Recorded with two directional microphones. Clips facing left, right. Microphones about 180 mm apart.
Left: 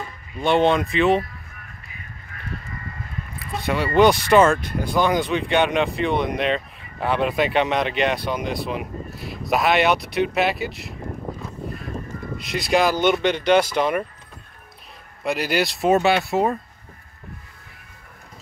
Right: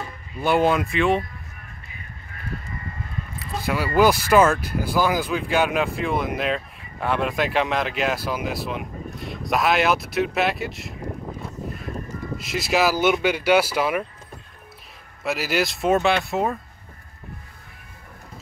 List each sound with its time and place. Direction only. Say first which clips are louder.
0.4 s speech: left 1 dB; 5° right (ahead or behind)
3.6 s speech: left 2 dB; 5° right (ahead or behind)
12.4 s speech: left 2 dB; centre (ahead or behind)
15.2 s speech: left 1 dB; centre (ahead or behind)